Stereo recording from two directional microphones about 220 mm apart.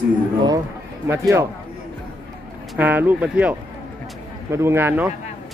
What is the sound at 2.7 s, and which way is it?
Speech, 10° right (ahead or behind).